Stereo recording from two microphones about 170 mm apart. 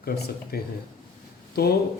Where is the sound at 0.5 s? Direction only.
65° left (ahead or behind).